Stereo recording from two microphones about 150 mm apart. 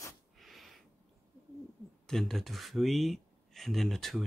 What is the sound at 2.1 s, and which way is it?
Speech, centre (ahead or behind).